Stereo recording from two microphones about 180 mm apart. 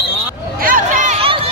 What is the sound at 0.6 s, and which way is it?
Run, 45° right (ahead or behind).